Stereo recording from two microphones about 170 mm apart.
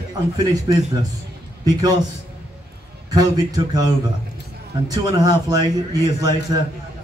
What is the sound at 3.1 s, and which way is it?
Speech, 20° right (ahead or behind).